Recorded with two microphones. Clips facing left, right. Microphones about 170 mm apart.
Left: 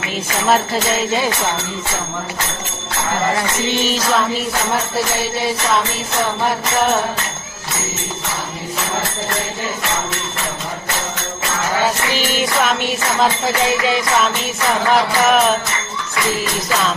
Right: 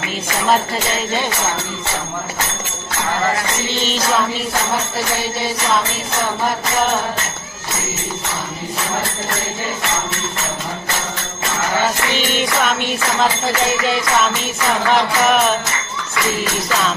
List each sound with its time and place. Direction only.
14.9 s music: centre (ahead or behind)